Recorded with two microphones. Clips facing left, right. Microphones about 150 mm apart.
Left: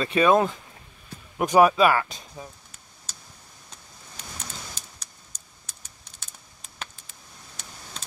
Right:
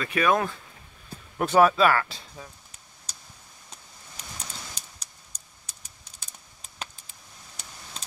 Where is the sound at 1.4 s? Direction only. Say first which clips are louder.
Left 2 dB; 15° left (ahead or behind).